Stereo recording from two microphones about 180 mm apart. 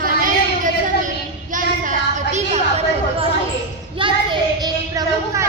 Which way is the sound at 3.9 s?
25° right (ahead or behind).